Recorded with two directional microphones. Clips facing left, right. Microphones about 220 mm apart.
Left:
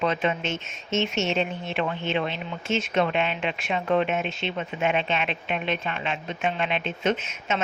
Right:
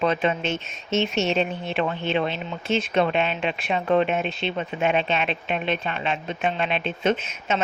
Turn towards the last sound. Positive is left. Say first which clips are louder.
# right 2 dB
turn(degrees=-30)  # may be behind; listen again after turning